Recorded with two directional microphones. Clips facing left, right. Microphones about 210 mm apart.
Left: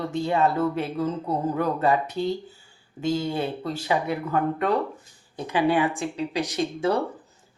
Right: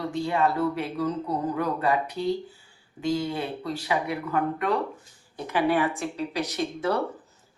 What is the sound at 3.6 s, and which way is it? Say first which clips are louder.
A woman's voice: left 2 dB; 25° left (ahead or behind).